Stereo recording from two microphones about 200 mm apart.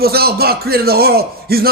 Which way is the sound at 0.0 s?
50° right (ahead or behind).